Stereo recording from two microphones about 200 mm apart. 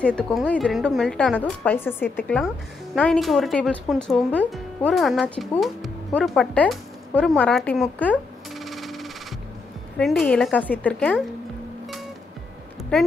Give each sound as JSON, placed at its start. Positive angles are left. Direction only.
{"t": 0.0, "sound": "a woman's voice", "side_deg": 5}